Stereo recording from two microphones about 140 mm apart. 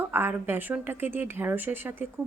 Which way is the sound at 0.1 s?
15° right (ahead or behind).